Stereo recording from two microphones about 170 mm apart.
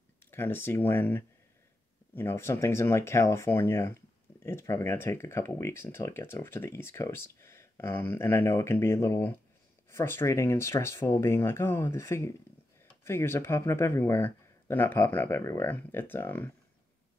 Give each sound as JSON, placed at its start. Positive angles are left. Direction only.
{"t": 0.3, "sound": "speech", "side_deg": 15}